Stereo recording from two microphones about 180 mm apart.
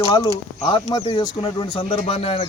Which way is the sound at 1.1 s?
25° left (ahead or behind).